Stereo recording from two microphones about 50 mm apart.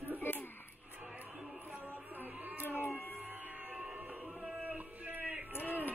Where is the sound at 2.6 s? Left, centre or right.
Left.